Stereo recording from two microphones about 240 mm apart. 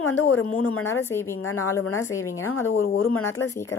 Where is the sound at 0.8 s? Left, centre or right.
Centre.